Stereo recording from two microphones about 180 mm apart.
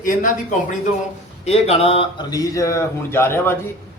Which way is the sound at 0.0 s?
45° left (ahead or behind).